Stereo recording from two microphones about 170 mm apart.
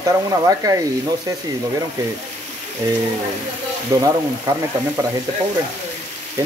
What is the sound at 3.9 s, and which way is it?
Speech, 20° right (ahead or behind).